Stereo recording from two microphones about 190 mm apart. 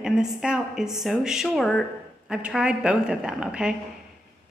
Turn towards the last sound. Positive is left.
turn(degrees=-5)  # may be behind; listen again after turning